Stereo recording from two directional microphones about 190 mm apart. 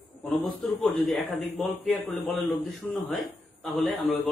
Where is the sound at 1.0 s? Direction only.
Centre (ahead or behind).